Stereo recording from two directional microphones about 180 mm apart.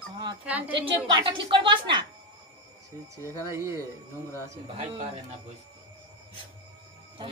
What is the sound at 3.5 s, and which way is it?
Speech, 15° right (ahead or behind).